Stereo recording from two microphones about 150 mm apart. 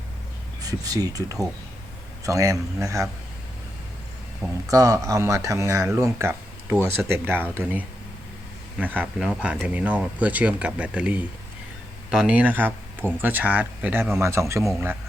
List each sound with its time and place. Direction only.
0.6 s speech: 25° right (ahead or behind)
4.7 s speech: 20° right (ahead or behind)
9.0 s speech: 5° right (ahead or behind)